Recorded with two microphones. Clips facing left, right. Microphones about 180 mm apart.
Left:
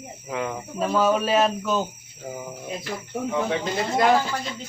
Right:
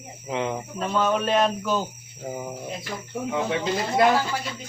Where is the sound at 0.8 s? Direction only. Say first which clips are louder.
Left 3 dB; 5° left (ahead or behind).